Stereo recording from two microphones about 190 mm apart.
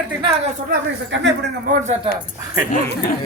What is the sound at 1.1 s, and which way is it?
Speech, 75° right (ahead or behind).